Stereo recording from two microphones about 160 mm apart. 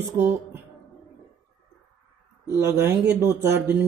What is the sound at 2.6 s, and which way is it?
Speech, 15° right (ahead or behind).